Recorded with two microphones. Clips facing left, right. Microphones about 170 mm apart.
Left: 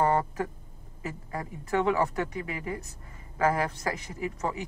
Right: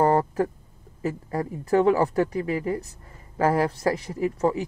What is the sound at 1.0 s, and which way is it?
Speech, 35° right (ahead or behind).